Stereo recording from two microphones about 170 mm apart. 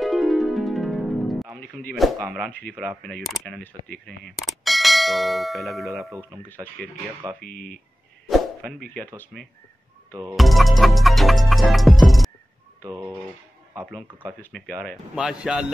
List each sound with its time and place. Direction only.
0.0 s music: centre (ahead or behind)
1.6 s speech: 10° left (ahead or behind)
2.0 s speech: centre (ahead or behind)
7.4 s speech: 55° left (ahead or behind)
8.3 s a sound: centre (ahead or behind)
9.2 s speech: 5° left (ahead or behind)
10.3 s music: centre (ahead or behind)
12.8 s speech: 15° right (ahead or behind)
13.8 s speech: centre (ahead or behind)
15.1 s speech: 5° right (ahead or behind)